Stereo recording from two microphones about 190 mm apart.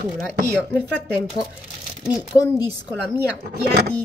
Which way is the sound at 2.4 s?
20° left (ahead or behind).